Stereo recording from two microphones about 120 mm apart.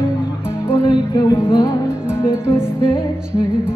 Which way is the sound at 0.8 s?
35° left (ahead or behind).